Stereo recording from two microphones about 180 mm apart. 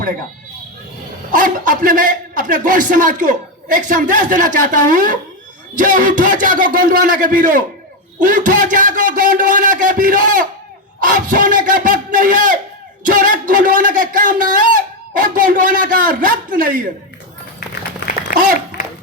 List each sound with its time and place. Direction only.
1.3 s a man's voice: 45° right (ahead or behind)